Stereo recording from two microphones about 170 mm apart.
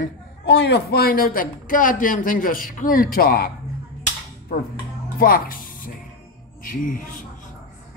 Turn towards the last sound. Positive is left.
turn(degrees=50)  # may be behind; listen again after turning